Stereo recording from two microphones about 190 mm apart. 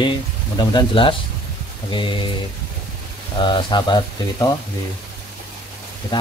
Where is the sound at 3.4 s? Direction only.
25° left (ahead or behind).